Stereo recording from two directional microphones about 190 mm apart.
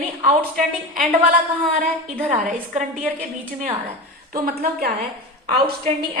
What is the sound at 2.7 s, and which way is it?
Speech, 45° right (ahead or behind).